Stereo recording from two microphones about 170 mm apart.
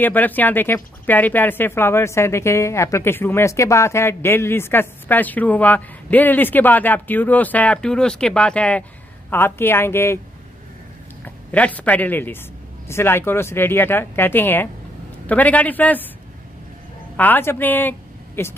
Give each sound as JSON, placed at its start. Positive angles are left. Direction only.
{"t": 0.0, "sound": "speech", "side_deg": 10}
{"t": 11.2, "sound": "speech", "side_deg": 10}
{"t": 17.2, "sound": "speech", "side_deg": 10}